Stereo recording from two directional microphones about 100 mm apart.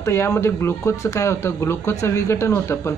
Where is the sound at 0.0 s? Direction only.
25° left (ahead or behind).